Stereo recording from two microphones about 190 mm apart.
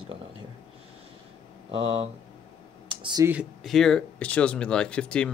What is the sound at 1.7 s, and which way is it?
Speech, 30° right (ahead or behind).